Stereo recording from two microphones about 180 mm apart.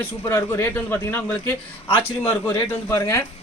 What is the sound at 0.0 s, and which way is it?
A man's voice, 15° left (ahead or behind).